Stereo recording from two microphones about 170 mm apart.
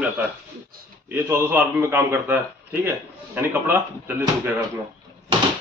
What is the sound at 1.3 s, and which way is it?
Speech, 15° right (ahead or behind).